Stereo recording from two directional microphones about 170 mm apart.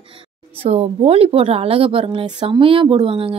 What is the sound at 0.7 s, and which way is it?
Speech, 35° right (ahead or behind).